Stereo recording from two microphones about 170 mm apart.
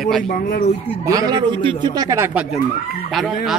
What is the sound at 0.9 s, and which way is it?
Speech, 20° right (ahead or behind).